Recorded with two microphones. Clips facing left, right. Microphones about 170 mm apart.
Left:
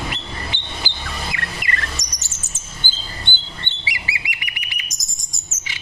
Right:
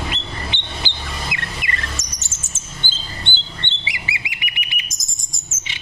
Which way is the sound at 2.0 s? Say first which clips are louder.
Right 1 dB; 25° right (ahead or behind).